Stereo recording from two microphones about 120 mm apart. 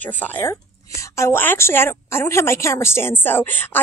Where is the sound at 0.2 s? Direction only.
15° left (ahead or behind).